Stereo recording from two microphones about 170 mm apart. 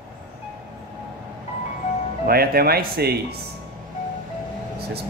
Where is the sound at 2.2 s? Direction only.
60° right (ahead or behind).